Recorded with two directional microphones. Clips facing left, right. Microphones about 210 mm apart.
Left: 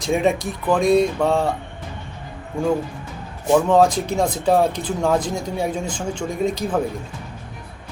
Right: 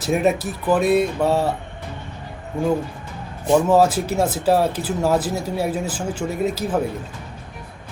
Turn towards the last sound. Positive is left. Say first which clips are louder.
# even
turn(degrees=-5)  # may be behind; listen again after turning